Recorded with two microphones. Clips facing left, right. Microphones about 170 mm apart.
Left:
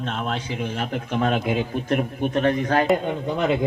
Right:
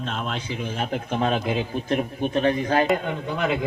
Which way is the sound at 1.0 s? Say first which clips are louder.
Left 2 dB; 35° right (ahead or behind).